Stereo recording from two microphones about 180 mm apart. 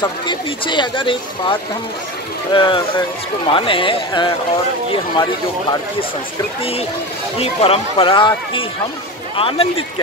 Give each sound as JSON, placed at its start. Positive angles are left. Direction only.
{"t": 0.0, "sound": "speech", "side_deg": 25}
{"t": 7.3, "sound": "speech", "side_deg": 35}